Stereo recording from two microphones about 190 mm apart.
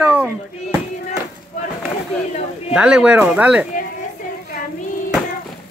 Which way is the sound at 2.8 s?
5° right (ahead or behind).